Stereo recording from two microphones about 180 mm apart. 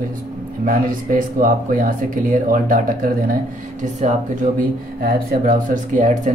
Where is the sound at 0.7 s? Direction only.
50° right (ahead or behind).